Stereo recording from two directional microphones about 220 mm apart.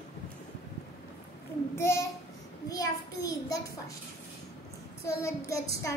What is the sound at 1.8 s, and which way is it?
Child singing, 10° left (ahead or behind).